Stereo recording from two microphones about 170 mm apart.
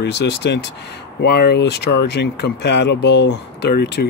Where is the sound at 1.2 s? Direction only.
75° left (ahead or behind).